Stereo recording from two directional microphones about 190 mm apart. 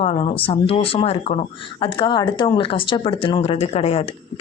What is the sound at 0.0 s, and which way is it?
Speech, 30° left (ahead or behind).